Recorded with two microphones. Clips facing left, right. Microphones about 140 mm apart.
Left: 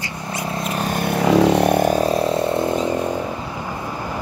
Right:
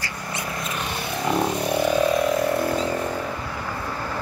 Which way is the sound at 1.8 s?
40° left (ahead or behind).